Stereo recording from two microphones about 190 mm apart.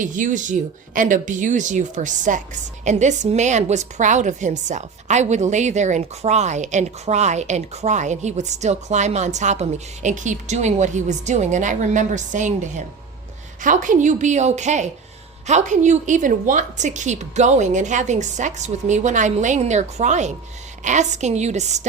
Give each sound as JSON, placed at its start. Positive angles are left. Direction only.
{"t": 0.0, "sound": "a woman's voice", "side_deg": -45}